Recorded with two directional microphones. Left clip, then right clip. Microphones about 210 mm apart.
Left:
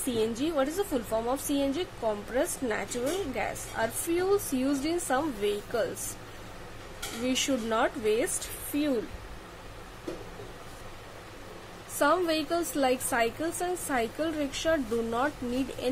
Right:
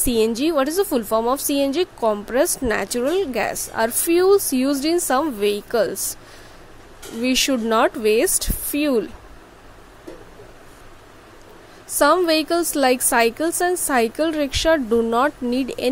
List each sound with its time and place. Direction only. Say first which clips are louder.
0.0 s a woman's voice: right 10 dB; 50° right (ahead or behind)
7.2 s a woman's voice: right 10 dB; 40° right (ahead or behind)
12.0 s a woman's voice: right 10 dB; 40° right (ahead or behind)